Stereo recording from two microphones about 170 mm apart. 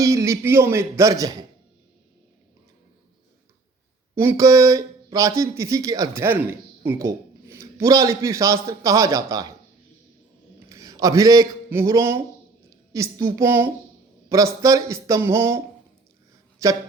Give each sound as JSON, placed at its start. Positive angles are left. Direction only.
{"t": 0.0, "sound": "a man's voice", "side_deg": -15}
{"t": 4.1, "sound": "speech", "side_deg": -15}
{"t": 10.7, "sound": "a woman's voice", "side_deg": -20}